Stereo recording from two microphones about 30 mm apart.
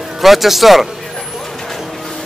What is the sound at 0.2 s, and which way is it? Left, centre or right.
Speech, centre.